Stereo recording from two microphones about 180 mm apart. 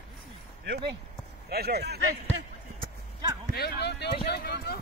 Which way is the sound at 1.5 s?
60° right (ahead or behind).